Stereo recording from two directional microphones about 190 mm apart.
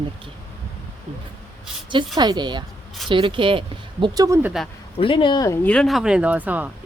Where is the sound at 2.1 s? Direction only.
20° right (ahead or behind).